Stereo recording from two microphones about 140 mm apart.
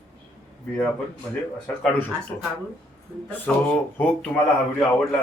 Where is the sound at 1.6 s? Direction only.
10° left (ahead or behind).